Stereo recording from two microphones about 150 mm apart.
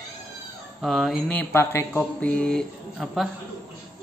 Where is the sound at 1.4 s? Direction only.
15° left (ahead or behind).